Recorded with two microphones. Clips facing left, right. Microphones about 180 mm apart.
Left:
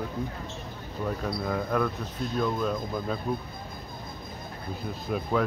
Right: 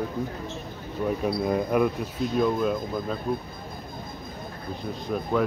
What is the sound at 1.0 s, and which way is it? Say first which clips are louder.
Speech: right 5 dB; 15° right (ahead or behind).